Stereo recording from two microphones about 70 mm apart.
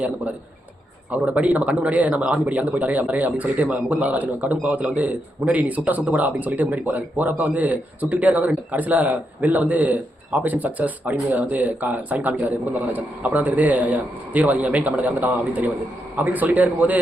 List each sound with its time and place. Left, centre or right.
1.1 s speech: centre